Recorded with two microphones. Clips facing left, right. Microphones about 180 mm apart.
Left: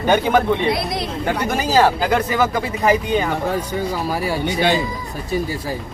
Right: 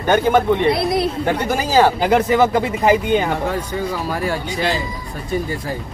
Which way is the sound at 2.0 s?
20° right (ahead or behind).